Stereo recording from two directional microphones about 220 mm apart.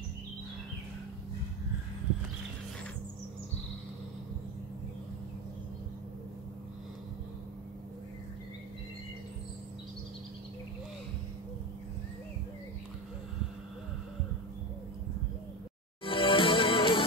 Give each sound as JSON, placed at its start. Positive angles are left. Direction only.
{"t": 16.0, "sound": "music", "side_deg": 25}